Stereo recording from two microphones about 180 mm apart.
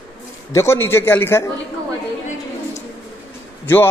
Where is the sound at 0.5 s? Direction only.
15° left (ahead or behind).